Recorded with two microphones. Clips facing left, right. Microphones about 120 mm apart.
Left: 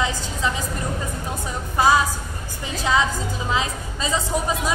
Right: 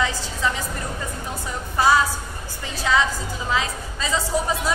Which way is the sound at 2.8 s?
20° left (ahead or behind).